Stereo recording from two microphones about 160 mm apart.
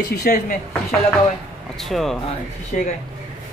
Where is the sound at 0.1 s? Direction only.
65° left (ahead or behind).